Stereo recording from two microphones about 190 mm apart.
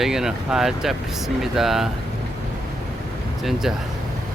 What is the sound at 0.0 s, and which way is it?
Speech, centre (ahead or behind).